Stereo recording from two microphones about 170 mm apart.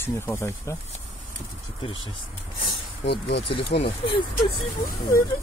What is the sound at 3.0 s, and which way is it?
Speech, 75° left (ahead or behind).